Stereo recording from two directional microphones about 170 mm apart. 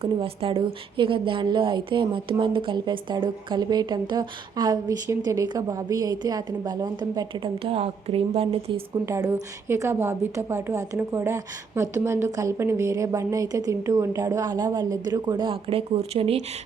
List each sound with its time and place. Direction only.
0.0 s a woman's voice: 30° right (ahead or behind)
9.0 s a woman's voice: 15° right (ahead or behind); by 16.4 s 35° right (ahead or behind)